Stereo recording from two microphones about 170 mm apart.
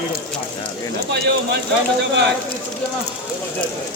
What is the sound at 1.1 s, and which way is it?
Speech, 75° right (ahead or behind).